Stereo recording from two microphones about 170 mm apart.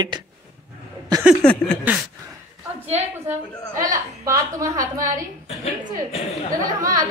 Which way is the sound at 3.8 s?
20° right (ahead or behind).